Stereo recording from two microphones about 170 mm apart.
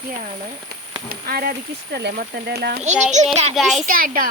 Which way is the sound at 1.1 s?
60° right (ahead or behind).